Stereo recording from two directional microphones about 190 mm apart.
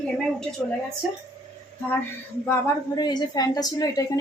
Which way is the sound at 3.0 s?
20° left (ahead or behind).